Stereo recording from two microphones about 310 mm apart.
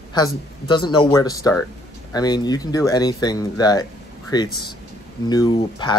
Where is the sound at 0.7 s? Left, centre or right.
Centre.